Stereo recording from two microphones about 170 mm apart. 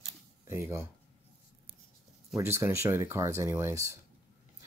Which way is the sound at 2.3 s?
15° right (ahead or behind).